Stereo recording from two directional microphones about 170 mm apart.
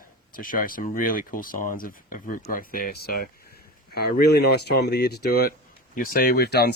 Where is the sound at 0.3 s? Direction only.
55° left (ahead or behind).